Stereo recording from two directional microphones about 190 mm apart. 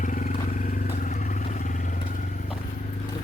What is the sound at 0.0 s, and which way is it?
Vehicle, 40° left (ahead or behind).